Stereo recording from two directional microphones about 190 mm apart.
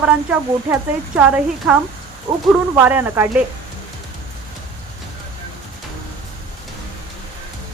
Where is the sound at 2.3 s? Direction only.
25° right (ahead or behind).